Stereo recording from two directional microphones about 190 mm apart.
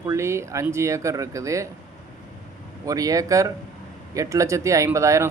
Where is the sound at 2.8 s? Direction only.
20° right (ahead or behind).